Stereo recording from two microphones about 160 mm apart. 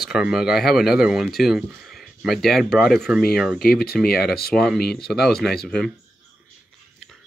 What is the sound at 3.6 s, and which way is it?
Speech, 70° left (ahead or behind).